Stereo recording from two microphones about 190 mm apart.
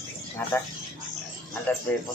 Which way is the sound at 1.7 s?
10° left (ahead or behind).